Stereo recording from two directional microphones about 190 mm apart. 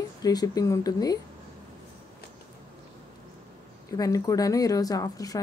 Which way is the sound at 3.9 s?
20° left (ahead or behind).